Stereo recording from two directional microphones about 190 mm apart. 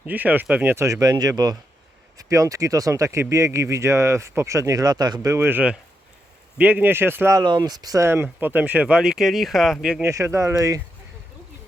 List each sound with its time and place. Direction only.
0.0 s speech: 10° right (ahead or behind)
10.0 s speech: 15° right (ahead or behind)